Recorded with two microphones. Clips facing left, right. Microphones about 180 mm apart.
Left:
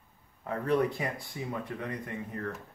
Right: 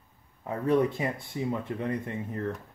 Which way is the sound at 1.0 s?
25° right (ahead or behind).